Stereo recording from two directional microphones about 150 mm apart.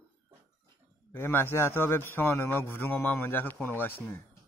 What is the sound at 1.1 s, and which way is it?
A man's voice, 15° left (ahead or behind).